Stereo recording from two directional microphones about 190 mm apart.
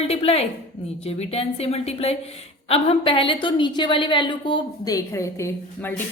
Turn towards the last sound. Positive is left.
turn(degrees=10)  # may be behind; listen again after turning